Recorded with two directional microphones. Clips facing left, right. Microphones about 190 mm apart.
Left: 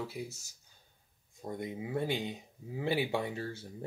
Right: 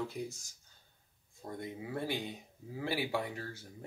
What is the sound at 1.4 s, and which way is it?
Speech, 20° left (ahead or behind).